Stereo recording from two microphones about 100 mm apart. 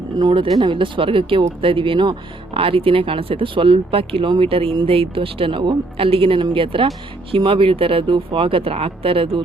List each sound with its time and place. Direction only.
0.2 s speech: 50° right (ahead or behind); by 9.4 s 65° right (ahead or behind)